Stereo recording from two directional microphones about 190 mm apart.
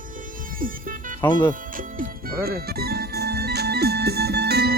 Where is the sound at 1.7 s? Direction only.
50° right (ahead or behind).